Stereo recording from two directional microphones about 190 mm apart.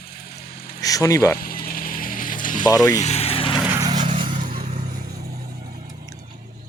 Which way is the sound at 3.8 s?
20° right (ahead or behind).